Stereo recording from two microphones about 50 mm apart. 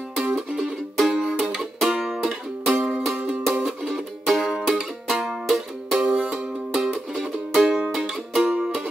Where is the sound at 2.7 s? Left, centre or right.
Right.